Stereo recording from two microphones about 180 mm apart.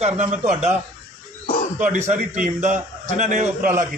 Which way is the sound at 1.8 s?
45° right (ahead or behind).